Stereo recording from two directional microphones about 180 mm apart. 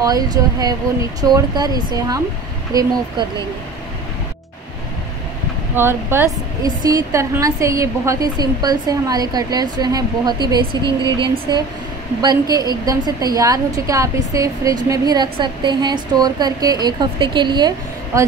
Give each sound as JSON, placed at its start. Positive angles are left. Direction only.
{"t": 0.0, "sound": "a woman's voice", "side_deg": -20}
{"t": 5.8, "sound": "a woman's voice", "side_deg": -15}